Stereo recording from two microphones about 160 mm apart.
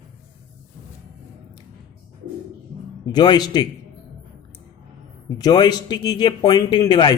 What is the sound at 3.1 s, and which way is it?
Speech, 25° left (ahead or behind).